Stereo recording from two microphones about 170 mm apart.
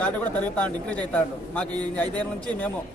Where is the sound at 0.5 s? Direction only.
10° left (ahead or behind).